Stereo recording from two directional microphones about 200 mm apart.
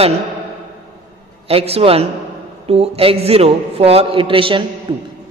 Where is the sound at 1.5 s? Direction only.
30° right (ahead or behind).